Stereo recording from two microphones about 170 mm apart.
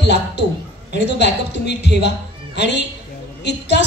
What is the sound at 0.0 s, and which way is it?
A man's voice, 80° left.